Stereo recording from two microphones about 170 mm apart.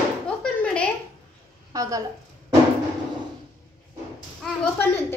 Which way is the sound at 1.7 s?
20° right (ahead or behind).